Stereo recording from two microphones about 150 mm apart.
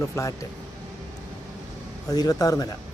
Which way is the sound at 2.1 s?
25° left (ahead or behind).